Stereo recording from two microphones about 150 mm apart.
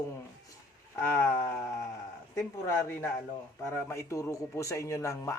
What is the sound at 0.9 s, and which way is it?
A man's voice, 15° left (ahead or behind).